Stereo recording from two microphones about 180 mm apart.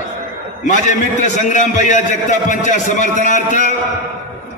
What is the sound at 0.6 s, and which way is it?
A man's voice, 45° left (ahead or behind).